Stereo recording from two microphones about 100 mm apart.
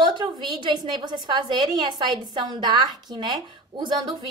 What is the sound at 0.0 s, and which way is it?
A woman's voice, 50° right (ahead or behind).